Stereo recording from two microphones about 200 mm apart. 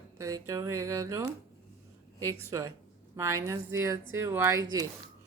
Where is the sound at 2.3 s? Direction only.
15° right (ahead or behind).